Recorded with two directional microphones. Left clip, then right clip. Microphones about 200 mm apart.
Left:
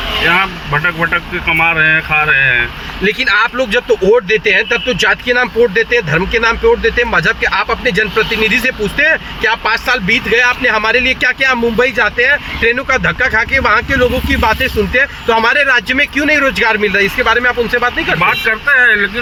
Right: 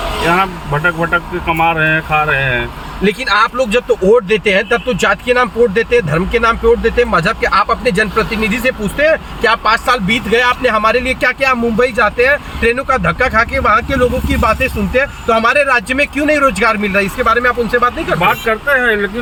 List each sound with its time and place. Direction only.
0.3 s speech: 15° right (ahead or behind)
3.0 s speech: 5° left (ahead or behind)
18.4 s speech: 15° right (ahead or behind)